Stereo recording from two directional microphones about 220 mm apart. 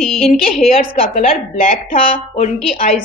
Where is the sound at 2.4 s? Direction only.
30° left (ahead or behind).